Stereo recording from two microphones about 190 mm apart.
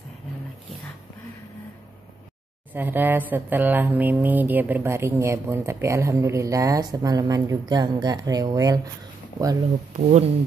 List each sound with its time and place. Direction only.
2.7 s speech: 10° right (ahead or behind)
9.9 s speech: 35° right (ahead or behind)